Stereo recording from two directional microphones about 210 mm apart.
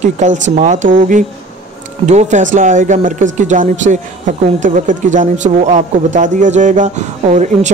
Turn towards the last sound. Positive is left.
turn(degrees=-35)  # may be behind; listen again after turning